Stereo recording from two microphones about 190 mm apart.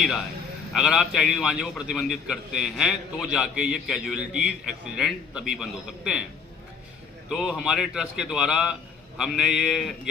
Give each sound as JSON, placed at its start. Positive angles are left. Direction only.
{"t": 0.7, "sound": "a man's voice", "side_deg": -5}
{"t": 7.3, "sound": "a man's voice", "side_deg": 0}